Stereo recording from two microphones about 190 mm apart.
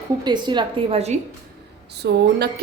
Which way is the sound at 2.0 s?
60° right (ahead or behind).